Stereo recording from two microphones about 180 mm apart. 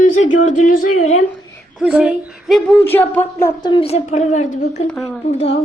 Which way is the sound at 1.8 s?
5° right (ahead or behind).